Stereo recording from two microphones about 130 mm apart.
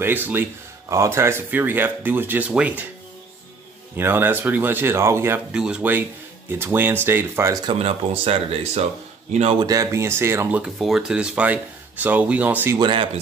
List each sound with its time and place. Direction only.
0.0 s speech: 15° right (ahead or behind)
3.9 s speech: 15° right (ahead or behind)
5.5 s speech: 5° right (ahead or behind)
7.6 s speech: 45° right (ahead or behind)
9.6 s speech: 25° right (ahead or behind)
10.6 s speech: 5° right (ahead or behind)
12.7 s speech: 40° right (ahead or behind)